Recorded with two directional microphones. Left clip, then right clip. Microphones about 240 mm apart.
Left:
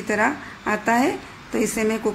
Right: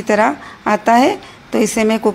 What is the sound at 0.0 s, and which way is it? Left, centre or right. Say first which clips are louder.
A woman's voice: right 7 dB; right.